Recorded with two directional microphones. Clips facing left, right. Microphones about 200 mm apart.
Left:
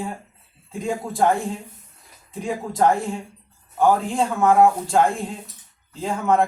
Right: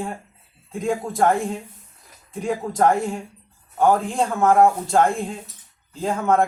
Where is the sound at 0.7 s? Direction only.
Centre (ahead or behind).